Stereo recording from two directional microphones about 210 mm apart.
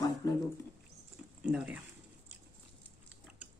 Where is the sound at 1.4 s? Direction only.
5° right (ahead or behind).